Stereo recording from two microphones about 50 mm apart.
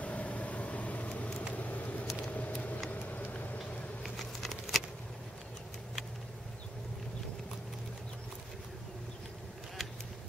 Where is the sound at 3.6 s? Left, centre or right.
Centre.